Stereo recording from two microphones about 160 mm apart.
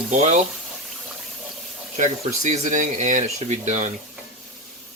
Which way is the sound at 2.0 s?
50° right (ahead or behind).